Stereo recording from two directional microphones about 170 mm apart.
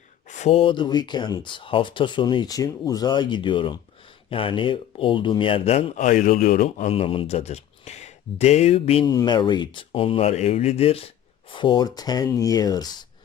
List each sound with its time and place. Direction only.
0.3 s speech: 40° left (ahead or behind)
9.0 s speech: 25° left (ahead or behind)